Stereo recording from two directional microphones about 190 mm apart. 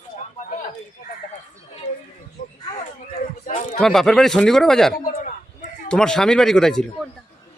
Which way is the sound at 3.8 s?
Centre (ahead or behind).